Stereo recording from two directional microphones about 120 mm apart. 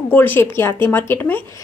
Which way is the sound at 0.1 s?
15° left (ahead or behind).